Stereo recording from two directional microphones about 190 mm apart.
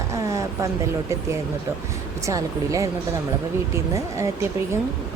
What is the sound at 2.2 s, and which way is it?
Speech, 15° right (ahead or behind).